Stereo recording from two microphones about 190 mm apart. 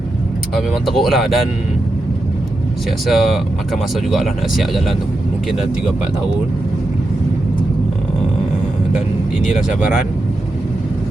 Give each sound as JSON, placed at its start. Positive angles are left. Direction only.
{"t": 0.5, "sound": "speech", "side_deg": 0}
{"t": 3.1, "sound": "speech", "side_deg": 0}